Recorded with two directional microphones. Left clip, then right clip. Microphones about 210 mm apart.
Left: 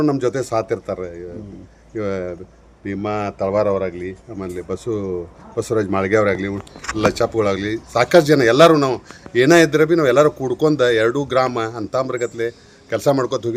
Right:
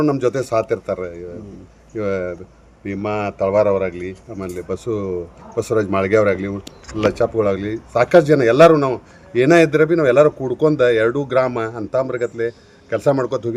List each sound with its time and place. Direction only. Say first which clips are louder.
0.0 s speech: right 1 dB; centre (ahead or behind)